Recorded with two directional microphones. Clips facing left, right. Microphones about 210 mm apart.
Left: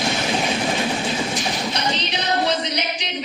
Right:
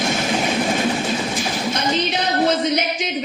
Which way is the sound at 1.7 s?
50° right (ahead or behind).